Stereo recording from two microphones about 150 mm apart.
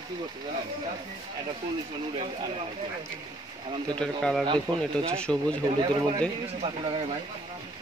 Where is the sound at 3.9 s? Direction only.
5° left (ahead or behind).